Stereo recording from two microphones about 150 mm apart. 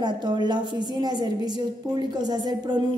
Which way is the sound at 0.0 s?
30° right (ahead or behind).